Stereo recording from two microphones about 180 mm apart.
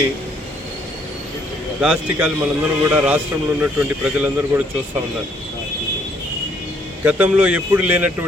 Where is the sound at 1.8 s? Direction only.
5° right (ahead or behind).